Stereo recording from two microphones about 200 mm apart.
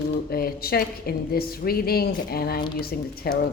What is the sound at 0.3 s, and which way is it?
A woman's voice, 50° left (ahead or behind).